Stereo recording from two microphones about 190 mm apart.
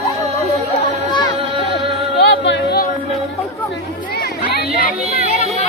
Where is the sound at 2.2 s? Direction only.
70° left (ahead or behind).